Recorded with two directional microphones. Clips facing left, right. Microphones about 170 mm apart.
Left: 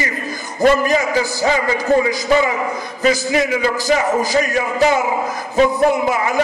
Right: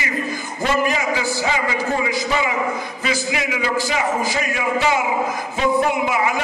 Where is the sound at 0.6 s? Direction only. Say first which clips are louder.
Left 7 dB; 40° left (ahead or behind).